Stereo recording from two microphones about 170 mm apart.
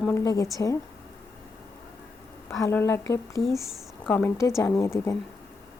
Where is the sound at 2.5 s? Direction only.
15° left (ahead or behind).